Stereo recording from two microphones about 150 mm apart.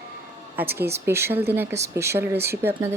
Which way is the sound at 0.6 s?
15° right (ahead or behind).